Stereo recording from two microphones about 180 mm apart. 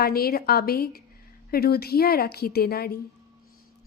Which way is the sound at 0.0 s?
60° left (ahead or behind).